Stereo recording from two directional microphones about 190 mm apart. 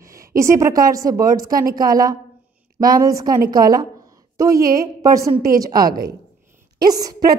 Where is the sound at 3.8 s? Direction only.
15° right (ahead or behind).